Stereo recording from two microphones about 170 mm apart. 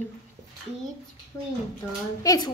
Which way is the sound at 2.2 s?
20° left (ahead or behind).